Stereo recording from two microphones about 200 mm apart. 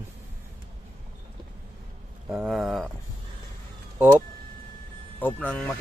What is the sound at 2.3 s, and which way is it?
Speech, 5° right (ahead or behind).